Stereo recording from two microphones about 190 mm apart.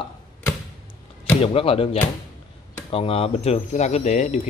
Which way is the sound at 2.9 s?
30° left (ahead or behind).